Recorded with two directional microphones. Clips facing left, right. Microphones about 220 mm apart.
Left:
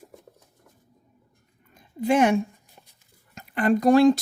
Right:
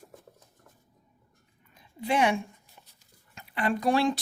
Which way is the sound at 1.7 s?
45° left (ahead or behind).